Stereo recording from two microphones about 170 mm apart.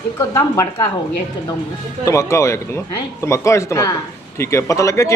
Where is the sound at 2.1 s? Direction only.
15° left (ahead or behind).